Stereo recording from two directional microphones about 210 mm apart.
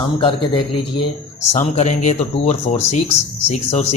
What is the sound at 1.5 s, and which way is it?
Speech, 35° left (ahead or behind).